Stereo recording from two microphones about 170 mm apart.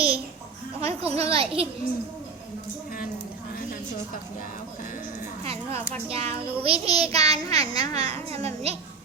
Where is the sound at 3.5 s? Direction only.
60° left (ahead or behind).